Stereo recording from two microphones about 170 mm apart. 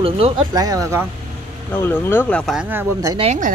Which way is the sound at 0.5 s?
20° right (ahead or behind).